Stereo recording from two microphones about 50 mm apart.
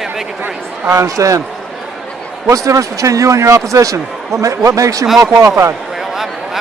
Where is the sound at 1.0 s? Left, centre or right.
Right.